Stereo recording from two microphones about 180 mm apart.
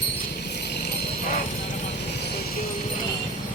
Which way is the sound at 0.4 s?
65° left (ahead or behind).